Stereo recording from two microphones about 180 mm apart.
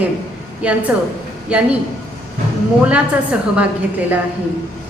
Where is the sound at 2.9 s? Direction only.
5° right (ahead or behind).